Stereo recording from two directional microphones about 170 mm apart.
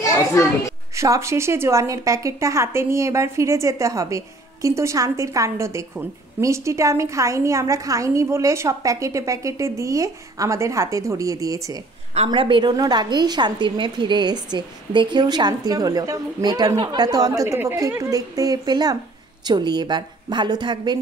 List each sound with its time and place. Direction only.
0.3 s a child's voice: 20° left (ahead or behind)
0.9 s a woman's voice: 20° right (ahead or behind)
12.3 s a woman's voice: 30° right (ahead or behind)